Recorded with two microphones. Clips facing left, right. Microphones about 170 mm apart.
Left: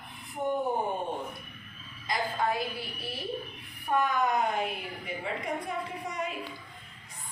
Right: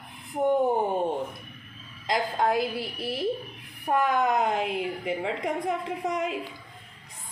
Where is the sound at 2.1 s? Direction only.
90° right.